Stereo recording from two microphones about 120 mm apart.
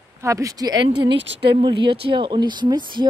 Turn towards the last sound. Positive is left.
turn(degrees=-40)  # may be behind; listen again after turning